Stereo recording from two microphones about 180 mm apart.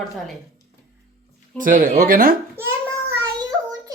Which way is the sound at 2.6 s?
15° right (ahead or behind).